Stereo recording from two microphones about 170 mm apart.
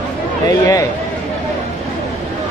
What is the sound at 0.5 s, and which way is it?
Speech, 20° left (ahead or behind).